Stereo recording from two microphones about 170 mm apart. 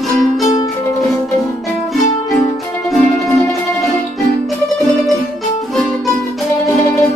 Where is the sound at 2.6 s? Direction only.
Centre (ahead or behind).